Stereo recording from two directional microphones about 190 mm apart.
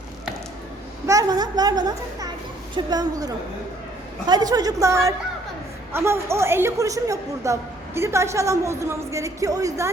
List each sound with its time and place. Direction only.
1.0 s a woman's voice: 20° right (ahead or behind)